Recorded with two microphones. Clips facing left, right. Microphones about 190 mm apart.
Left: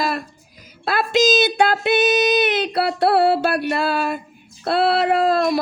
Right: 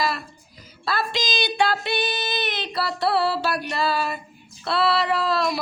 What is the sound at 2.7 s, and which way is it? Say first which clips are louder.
Music: left 4 dB; 60° left (ahead or behind).